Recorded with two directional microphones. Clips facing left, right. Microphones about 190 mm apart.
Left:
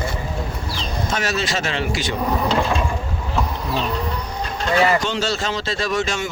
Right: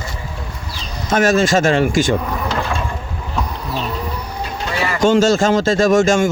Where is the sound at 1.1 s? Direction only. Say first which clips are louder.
Right 11 dB; 50° right (ahead or behind).